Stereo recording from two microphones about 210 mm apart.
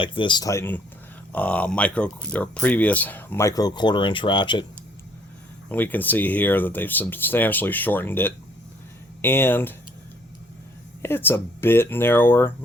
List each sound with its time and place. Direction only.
0.0 s speech: 25° left (ahead or behind)
5.6 s speech: 10° left (ahead or behind)
11.0 s speech: 10° left (ahead or behind)